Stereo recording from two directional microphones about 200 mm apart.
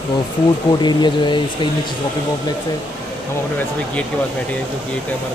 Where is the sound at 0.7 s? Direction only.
20° left (ahead or behind).